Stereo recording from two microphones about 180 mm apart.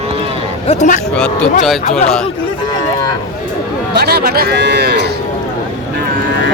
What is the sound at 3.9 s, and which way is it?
Speech, 60° right (ahead or behind).